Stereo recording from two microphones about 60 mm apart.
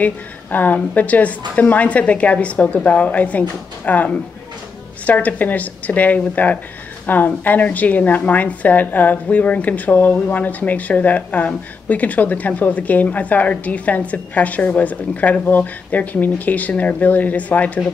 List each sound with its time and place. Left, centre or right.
0.0 s a woman's voice: left